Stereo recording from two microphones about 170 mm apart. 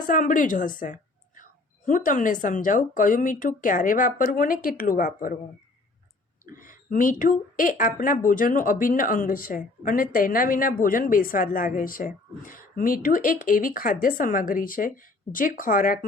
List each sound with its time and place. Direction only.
0.0 s a woman's voice: 50° left (ahead or behind)
6.4 s a woman's voice: 55° left (ahead or behind)